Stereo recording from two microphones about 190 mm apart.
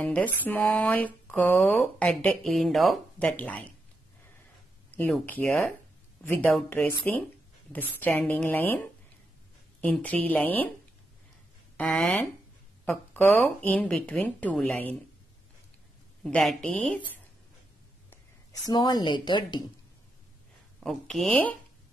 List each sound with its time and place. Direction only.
0.0 s speech: 5° left (ahead or behind)
4.9 s speech: 10° left (ahead or behind)
11.7 s speech: 5° left (ahead or behind)
16.3 s speech: 5° left (ahead or behind)
18.1 s speech: 20° left (ahead or behind)
20.8 s speech: centre (ahead or behind)